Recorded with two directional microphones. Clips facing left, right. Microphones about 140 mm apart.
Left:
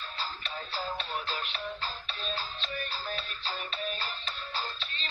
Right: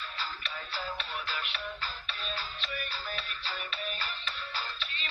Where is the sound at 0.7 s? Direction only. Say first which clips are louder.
Left 3 dB; 30° left (ahead or behind).